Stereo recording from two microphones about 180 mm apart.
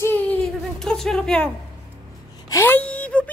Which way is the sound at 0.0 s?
10° left (ahead or behind).